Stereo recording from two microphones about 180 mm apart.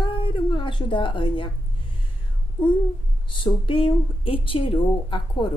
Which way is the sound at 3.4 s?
30° left (ahead or behind).